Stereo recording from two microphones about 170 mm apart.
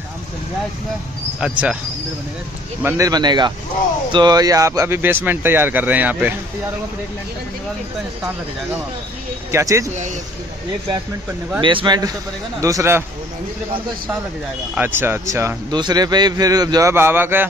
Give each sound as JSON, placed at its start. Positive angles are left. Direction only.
{"t": 1.4, "sound": "a man's voice", "side_deg": -5}
{"t": 2.8, "sound": "a man's voice", "side_deg": -15}
{"t": 9.5, "sound": "a man's voice", "side_deg": -15}
{"t": 11.6, "sound": "a man's voice", "side_deg": -25}
{"t": 14.8, "sound": "a man's voice", "side_deg": -15}